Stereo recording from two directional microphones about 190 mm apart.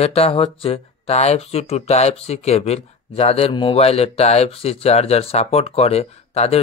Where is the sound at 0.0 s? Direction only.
30° left (ahead or behind).